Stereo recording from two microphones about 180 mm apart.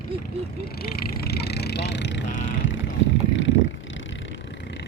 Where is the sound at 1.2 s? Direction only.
60° left (ahead or behind).